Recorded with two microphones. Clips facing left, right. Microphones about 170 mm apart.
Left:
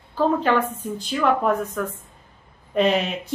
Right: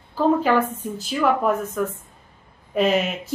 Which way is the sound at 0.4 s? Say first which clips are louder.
Right 1 dB; 5° right (ahead or behind).